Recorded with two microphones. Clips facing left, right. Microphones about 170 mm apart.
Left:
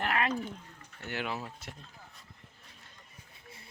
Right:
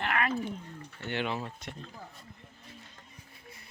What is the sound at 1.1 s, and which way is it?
Speech, 5° left (ahead or behind).